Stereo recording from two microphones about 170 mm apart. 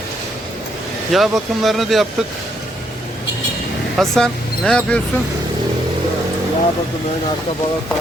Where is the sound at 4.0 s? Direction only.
Centre (ahead or behind).